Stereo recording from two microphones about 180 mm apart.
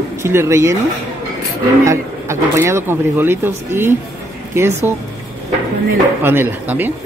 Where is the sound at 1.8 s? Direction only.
15° right (ahead or behind).